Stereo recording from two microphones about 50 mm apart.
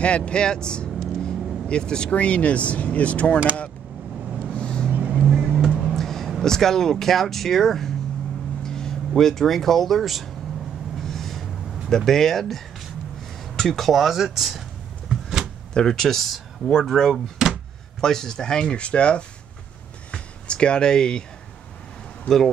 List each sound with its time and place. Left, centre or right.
0.0 s speech: left
4.6 s vehicle: centre
5.1 s vehicle: right
5.9 s a sound: centre
6.4 s speech: centre
11.0 s a sound: centre
11.9 s speech: centre
15.0 s a sound: centre
15.7 s speech: centre
17.1 s speech: centre
18.0 s speech: centre
20.1 s a sound: centre